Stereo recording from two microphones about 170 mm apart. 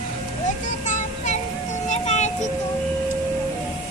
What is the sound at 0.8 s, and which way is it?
Music, 45° left (ahead or behind).